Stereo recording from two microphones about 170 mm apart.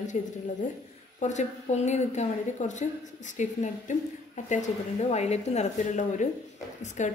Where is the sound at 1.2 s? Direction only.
45° left (ahead or behind).